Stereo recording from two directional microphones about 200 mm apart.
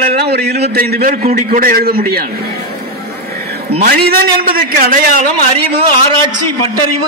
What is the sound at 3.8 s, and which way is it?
A man's voice, 50° right (ahead or behind).